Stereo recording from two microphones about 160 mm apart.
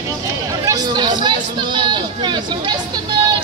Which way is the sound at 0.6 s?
25° right (ahead or behind).